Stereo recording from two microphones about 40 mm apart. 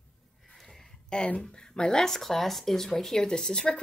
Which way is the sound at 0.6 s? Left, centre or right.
Centre.